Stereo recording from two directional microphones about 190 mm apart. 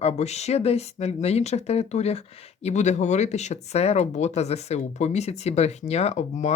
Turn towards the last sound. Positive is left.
turn(degrees=35)  # may be behind; listen again after turning